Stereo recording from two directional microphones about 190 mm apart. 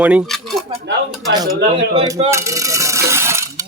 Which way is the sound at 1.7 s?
30° right (ahead or behind).